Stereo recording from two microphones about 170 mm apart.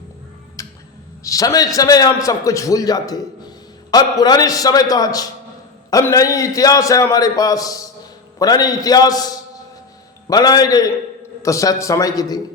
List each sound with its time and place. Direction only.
1.2 s a man's voice: 20° left (ahead or behind)
10.2 s a man's voice: 20° left (ahead or behind)